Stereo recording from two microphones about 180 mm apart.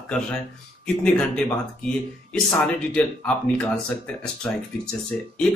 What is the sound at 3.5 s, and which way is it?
Speech, 5° left (ahead or behind).